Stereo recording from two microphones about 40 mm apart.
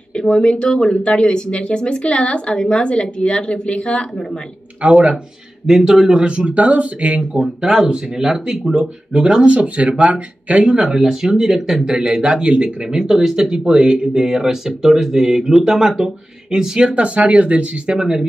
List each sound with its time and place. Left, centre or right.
0.1 s a sound: centre
0.5 s speech: left
4.8 s speech: right
5.7 s speech: centre
6.2 s speech: right
7.4 s speech: centre; by 10.6 s right
10.8 s speech: centre
11.9 s speech: right
16.9 s speech: right
17.9 s speech: centre